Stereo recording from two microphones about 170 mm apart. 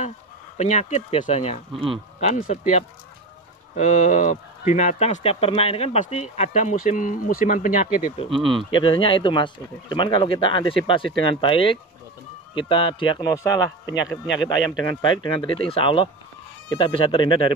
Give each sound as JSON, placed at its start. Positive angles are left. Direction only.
{"t": 0.6, "sound": "speech", "side_deg": 45}
{"t": 8.7, "sound": "speech", "side_deg": 30}
{"t": 14.0, "sound": "speech", "side_deg": -5}
{"t": 14.8, "sound": "speech", "side_deg": 25}